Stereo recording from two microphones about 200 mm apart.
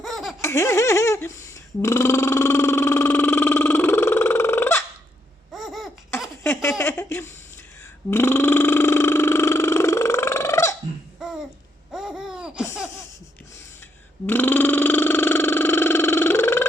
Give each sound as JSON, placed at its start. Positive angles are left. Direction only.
{"t": 0.0, "sound": "baby laughter", "side_deg": 0}
{"t": 0.4, "sound": "a sound", "side_deg": 15}
{"t": 5.5, "sound": "laughter", "side_deg": 0}
{"t": 6.4, "sound": "a sound", "side_deg": 15}
{"t": 8.1, "sound": "burping", "side_deg": 10}
{"t": 11.2, "sound": "babbling", "side_deg": 0}
{"t": 14.3, "sound": "burping", "side_deg": 10}